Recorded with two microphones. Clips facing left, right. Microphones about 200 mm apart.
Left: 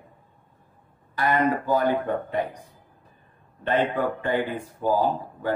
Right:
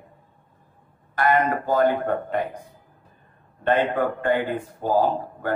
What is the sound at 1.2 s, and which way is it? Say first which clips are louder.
A man's voice: right 2 dB; 50° right (ahead or behind).